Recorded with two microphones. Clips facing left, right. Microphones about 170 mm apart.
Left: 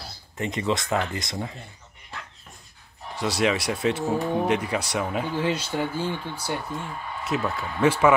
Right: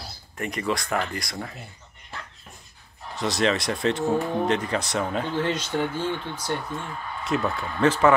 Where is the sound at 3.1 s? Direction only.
10° left (ahead or behind).